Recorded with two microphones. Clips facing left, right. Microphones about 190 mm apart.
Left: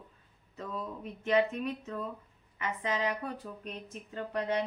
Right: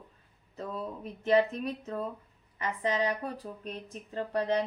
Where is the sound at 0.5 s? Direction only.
35° right (ahead or behind).